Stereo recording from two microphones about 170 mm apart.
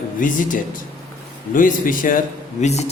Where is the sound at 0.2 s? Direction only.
50° left (ahead or behind).